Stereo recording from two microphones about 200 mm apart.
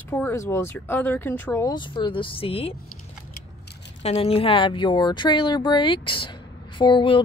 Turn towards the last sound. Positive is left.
turn(degrees=25)  # may be behind; listen again after turning